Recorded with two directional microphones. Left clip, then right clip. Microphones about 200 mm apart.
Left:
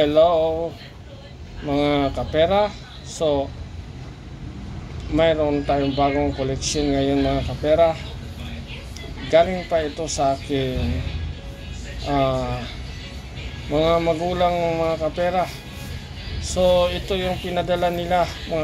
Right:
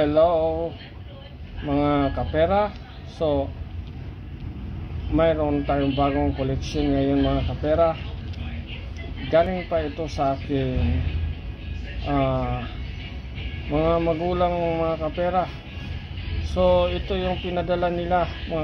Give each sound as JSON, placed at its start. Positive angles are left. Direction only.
{"t": 0.0, "sound": "speech", "side_deg": 0}
{"t": 1.7, "sound": "speech", "side_deg": 0}
{"t": 5.1, "sound": "speech", "side_deg": 0}
{"t": 9.3, "sound": "speech", "side_deg": 0}
{"t": 12.3, "sound": "speech", "side_deg": 0}
{"t": 13.8, "sound": "speech", "side_deg": 0}
{"t": 16.4, "sound": "speech", "side_deg": -5}